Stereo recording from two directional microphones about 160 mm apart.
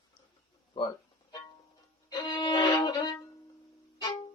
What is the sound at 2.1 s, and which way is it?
Violin, 25° left (ahead or behind).